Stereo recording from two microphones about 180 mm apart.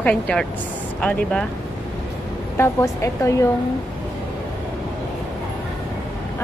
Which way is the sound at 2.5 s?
15° left (ahead or behind).